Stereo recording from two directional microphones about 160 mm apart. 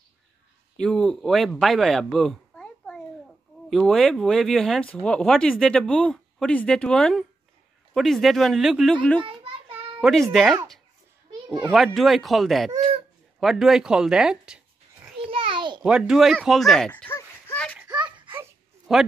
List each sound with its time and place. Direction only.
0.7 s a child's voice: 5° left (ahead or behind)
9.2 s children playing: 35° right (ahead or behind)
9.9 s speech: centre (ahead or behind)
11.7 s speech: centre (ahead or behind)
15.3 s a sound: 30° right (ahead or behind)
15.8 s a sound: 5° right (ahead or behind); by 17.7 s 10° left (ahead or behind)
18.9 s a man's voice: centre (ahead or behind)